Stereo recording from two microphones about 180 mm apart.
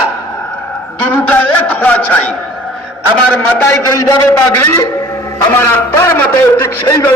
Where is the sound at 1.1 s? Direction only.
10° left (ahead or behind).